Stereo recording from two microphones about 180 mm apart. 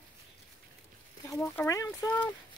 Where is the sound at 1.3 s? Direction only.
5° left (ahead or behind).